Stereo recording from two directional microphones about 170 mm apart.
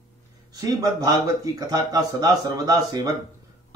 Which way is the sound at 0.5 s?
20° right (ahead or behind).